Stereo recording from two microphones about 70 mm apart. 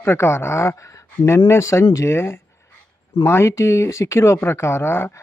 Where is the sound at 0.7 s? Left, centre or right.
Left.